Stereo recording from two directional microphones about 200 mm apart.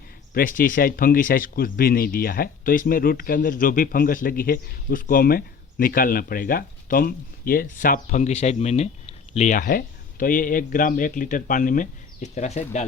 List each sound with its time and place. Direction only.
0.3 s speech: 45° left (ahead or behind)